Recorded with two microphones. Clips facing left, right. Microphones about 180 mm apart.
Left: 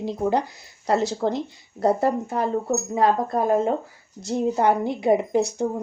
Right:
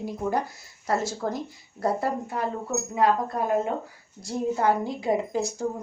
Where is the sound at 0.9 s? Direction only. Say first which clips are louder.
Left 5 dB; 70° left (ahead or behind).